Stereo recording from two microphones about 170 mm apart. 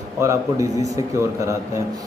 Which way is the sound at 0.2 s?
20° right (ahead or behind).